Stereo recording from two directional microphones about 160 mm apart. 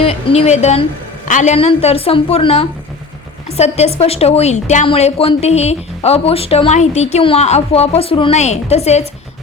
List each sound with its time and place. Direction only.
0.0 s a man's voice: 40° left (ahead or behind)
1.5 s speech: 40° left (ahead or behind)